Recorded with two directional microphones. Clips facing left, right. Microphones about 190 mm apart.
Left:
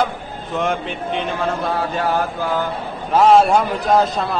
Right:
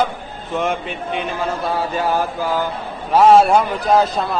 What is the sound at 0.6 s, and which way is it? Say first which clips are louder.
A man's voice: even; centre (ahead or behind).